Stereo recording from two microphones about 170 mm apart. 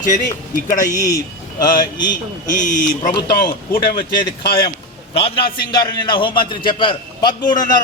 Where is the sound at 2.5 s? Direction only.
50° left (ahead or behind).